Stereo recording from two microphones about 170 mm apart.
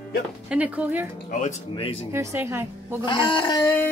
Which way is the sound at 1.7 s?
35° left (ahead or behind).